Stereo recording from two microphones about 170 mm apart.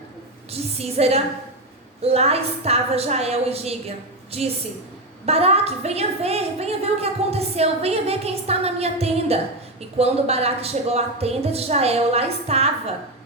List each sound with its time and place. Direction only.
0.5 s a woman's voice: 35° right (ahead or behind)